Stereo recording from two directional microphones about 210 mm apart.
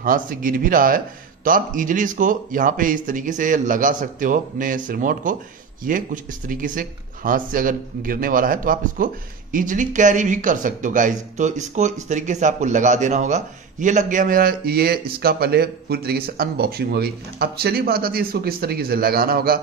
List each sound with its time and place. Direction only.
0.0 s speech: 40° right (ahead or behind)